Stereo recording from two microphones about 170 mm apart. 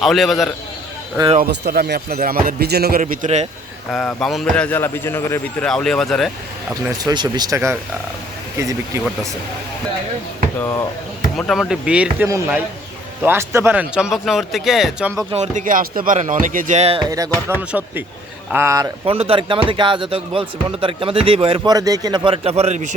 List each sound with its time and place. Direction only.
0.0 s speech: centre (ahead or behind)
1.4 s speech: 70° right (ahead or behind)
3.0 s speech: 50° right (ahead or behind)
3.9 s speech: centre (ahead or behind)
5.6 s speech: 5° left (ahead or behind)
7.0 s speech: 25° right (ahead or behind)
10.6 s speech: 20° left (ahead or behind)
11.3 s speech: 5° left (ahead or behind)
15.3 s speech: 45° right (ahead or behind)
17.1 s speech: 20° right (ahead or behind)
17.5 s speech: 10° right (ahead or behind)
19.0 s speech: 35° right (ahead or behind)